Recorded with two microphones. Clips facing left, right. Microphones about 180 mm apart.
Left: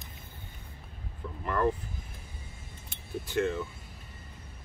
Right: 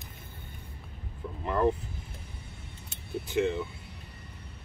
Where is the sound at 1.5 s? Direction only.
20° right (ahead or behind).